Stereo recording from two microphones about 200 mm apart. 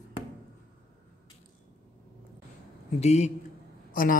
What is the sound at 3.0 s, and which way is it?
Speech, 35° left (ahead or behind).